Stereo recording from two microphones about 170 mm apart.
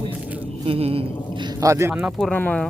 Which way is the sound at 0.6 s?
35° right (ahead or behind).